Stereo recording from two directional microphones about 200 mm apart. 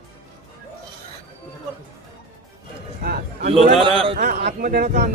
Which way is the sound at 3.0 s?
50° right (ahead or behind).